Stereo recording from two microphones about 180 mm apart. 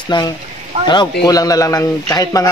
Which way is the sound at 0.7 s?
35° right (ahead or behind).